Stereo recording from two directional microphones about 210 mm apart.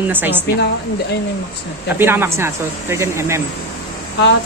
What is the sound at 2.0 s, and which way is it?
Speech, 10° right (ahead or behind).